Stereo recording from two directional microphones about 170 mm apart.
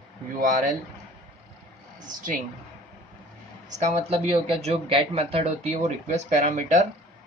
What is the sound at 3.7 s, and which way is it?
Speech, 45° right (ahead or behind).